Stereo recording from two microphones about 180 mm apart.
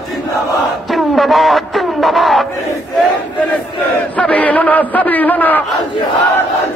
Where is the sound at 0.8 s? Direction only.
Centre (ahead or behind).